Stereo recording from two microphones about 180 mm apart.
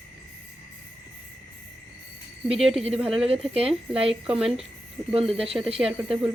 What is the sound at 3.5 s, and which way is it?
Speech, 35° right (ahead or behind).